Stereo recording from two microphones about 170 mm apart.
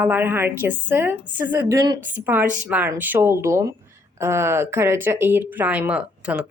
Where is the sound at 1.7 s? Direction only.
20° right (ahead or behind).